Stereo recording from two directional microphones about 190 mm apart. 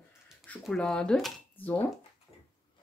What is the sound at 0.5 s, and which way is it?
Speech, 5° left (ahead or behind).